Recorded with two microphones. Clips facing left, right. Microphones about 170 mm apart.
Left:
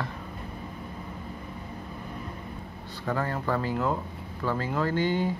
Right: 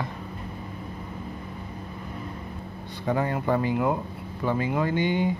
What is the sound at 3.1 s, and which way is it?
Speech, 15° right (ahead or behind).